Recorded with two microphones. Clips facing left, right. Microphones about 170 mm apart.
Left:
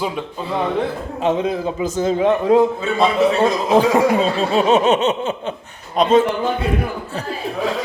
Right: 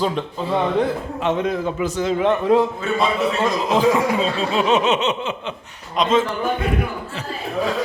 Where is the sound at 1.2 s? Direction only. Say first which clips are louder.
Left 3 dB; 35° left (ahead or behind).